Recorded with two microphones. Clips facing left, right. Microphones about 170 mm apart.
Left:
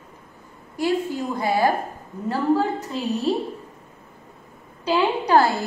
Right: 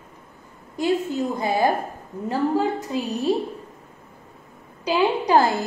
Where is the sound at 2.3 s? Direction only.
15° right (ahead or behind).